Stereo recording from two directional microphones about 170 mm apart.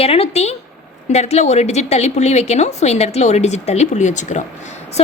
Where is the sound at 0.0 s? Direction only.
35° left (ahead or behind).